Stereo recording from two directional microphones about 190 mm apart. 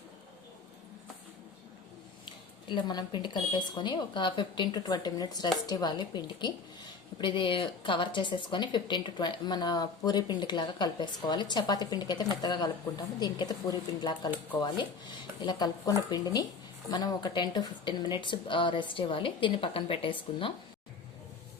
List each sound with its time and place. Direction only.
2.2 s a woman's voice: 25° left (ahead or behind)
15.4 s a woman's voice: 20° left (ahead or behind)